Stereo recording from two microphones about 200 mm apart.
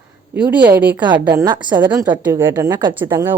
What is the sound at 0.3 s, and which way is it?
A woman's voice, 5° right (ahead or behind).